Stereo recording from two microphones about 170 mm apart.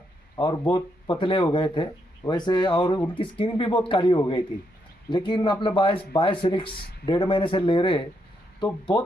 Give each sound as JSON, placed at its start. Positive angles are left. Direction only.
{"t": 0.3, "sound": "speech", "side_deg": 25}